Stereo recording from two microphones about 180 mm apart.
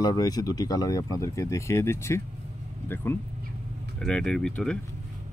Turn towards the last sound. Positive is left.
turn(degrees=5)  # may be behind; listen again after turning